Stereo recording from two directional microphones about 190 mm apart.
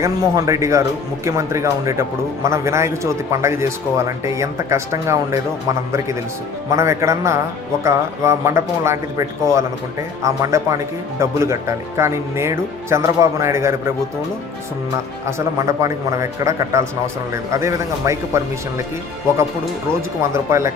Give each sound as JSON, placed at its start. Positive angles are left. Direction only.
{"t": 0.0, "sound": "speech", "side_deg": -15}
{"t": 6.7, "sound": "speech", "side_deg": -15}
{"t": 15.4, "sound": "speech", "side_deg": -15}
{"t": 20.3, "sound": "speech", "side_deg": -15}